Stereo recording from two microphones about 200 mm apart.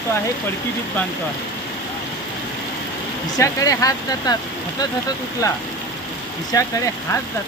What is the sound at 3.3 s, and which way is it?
Speech, 15° left (ahead or behind).